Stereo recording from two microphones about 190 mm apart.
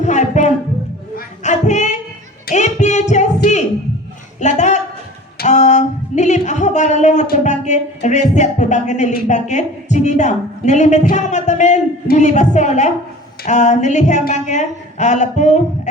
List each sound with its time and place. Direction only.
0.0 s music: 40° left (ahead or behind)
1.1 s child singing: 40° left (ahead or behind)
2.5 s singing: 40° left (ahead or behind)
4.4 s a sound: 40° left (ahead or behind)
12.0 s a woman's voice: 40° left (ahead or behind)